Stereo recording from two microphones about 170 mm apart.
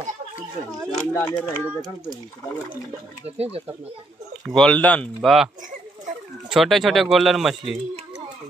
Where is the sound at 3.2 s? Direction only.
35° right (ahead or behind).